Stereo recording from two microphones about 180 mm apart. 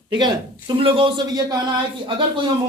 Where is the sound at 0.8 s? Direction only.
30° right (ahead or behind).